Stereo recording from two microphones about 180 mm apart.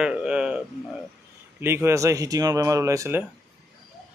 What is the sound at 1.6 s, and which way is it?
Speech, 15° right (ahead or behind).